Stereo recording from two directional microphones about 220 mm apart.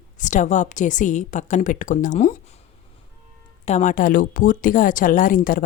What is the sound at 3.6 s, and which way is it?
A woman's voice, 35° left (ahead or behind).